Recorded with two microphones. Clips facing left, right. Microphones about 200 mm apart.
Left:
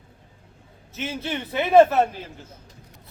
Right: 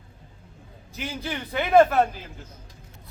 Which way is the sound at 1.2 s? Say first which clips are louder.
Left 2 dB; 25° left (ahead or behind).